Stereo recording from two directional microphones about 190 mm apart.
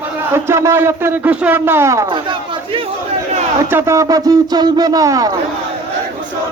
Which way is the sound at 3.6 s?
15° right (ahead or behind).